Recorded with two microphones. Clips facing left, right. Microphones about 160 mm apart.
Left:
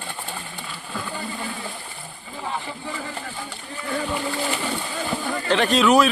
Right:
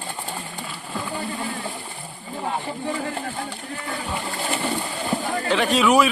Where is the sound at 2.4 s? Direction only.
50° right (ahead or behind).